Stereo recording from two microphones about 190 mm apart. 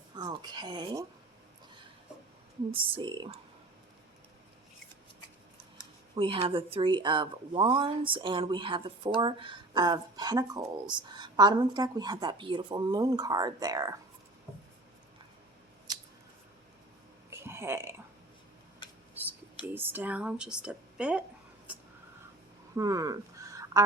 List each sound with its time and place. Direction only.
0.2 s speech: 20° right (ahead or behind)
2.7 s speech: 25° right (ahead or behind)
6.1 s speech: 30° right (ahead or behind)
17.3 s burping: 15° right (ahead or behind)
19.2 s a sound: 10° right (ahead or behind)
19.6 s speech: 10° right (ahead or behind)
22.7 s a sound: 15° right (ahead or behind)